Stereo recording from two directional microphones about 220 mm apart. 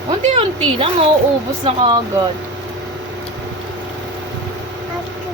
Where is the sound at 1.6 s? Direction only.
25° right (ahead or behind).